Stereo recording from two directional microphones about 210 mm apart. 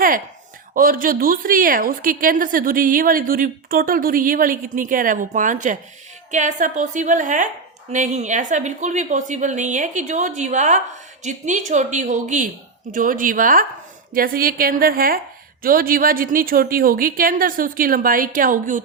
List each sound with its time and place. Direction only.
0.7 s a woman's voice: 40° right (ahead or behind)